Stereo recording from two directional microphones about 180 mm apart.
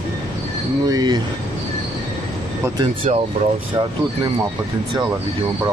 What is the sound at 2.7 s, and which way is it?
Speech, 30° right (ahead or behind).